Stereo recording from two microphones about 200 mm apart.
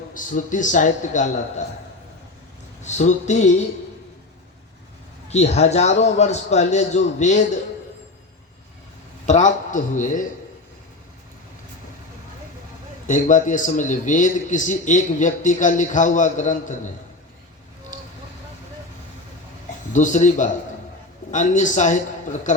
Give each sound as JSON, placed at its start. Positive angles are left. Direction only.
{"t": 0.1, "sound": "a man's voice", "side_deg": 40}
{"t": 2.8, "sound": "a man's voice", "side_deg": 35}
{"t": 5.3, "sound": "a man's voice", "side_deg": 35}
{"t": 9.2, "sound": "a man's voice", "side_deg": 35}
{"t": 13.1, "sound": "a man's voice", "side_deg": 40}
{"t": 17.9, "sound": "vehicle", "side_deg": 40}
{"t": 19.9, "sound": "a man's voice", "side_deg": 40}